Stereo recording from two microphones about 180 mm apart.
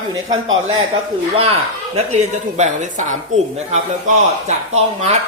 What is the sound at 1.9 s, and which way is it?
A man's voice, 40° right (ahead or behind).